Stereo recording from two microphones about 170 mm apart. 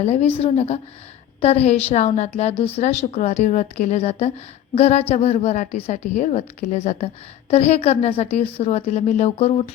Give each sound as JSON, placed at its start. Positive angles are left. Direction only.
{"t": 0.0, "sound": "a woman's voice", "side_deg": 40}